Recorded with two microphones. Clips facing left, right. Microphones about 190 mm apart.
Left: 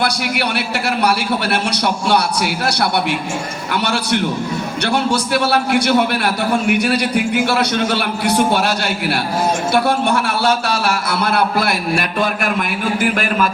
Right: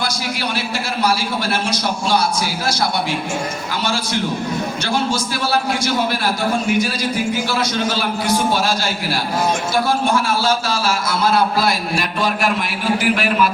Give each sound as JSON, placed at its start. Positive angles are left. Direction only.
{"t": 0.0, "sound": "a man's voice", "side_deg": 65}
{"t": 1.7, "sound": "a man's voice", "side_deg": 65}
{"t": 3.7, "sound": "a man's voice", "side_deg": 65}